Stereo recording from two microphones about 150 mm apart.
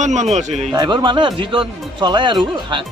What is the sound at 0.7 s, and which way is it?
Speech, 30° right (ahead or behind).